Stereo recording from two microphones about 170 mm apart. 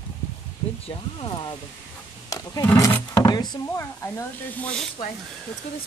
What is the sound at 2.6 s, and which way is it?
Speech, 15° left (ahead or behind).